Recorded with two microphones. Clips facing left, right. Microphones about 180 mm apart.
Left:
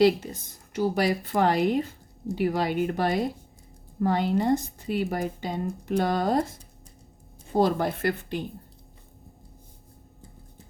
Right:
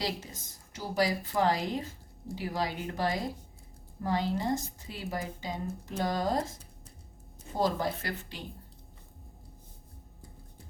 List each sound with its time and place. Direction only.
0.7 s a woman's voice: 65° left (ahead or behind)
7.5 s a woman's voice: 60° left (ahead or behind)